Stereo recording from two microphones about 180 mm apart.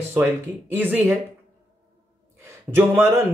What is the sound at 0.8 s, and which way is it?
Speech, 10° right (ahead or behind).